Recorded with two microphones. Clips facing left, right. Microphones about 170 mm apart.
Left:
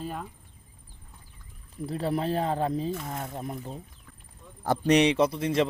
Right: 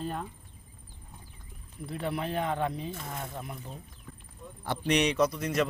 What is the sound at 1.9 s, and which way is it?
A man's voice, 35° left (ahead or behind).